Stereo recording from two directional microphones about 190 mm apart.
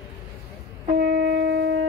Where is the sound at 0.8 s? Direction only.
55° right (ahead or behind).